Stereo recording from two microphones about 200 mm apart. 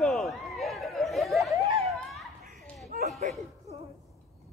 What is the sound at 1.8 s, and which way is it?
Children playing, centre (ahead or behind).